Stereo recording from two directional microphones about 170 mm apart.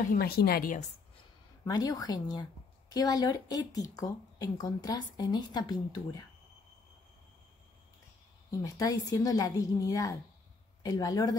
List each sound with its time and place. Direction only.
0.1 s a woman's voice: 65° left (ahead or behind)
1.6 s speech: 20° left (ahead or behind)
8.5 s speech: 20° left (ahead or behind)